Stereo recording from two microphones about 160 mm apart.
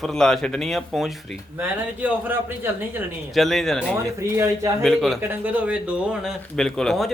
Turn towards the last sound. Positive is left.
turn(degrees=5)  # may be behind; listen again after turning